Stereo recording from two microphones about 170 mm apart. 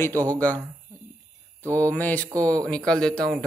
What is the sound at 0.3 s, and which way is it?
Speech, 10° left (ahead or behind).